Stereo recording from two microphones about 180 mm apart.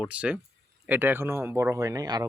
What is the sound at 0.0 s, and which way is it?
Speech, 5° right (ahead or behind).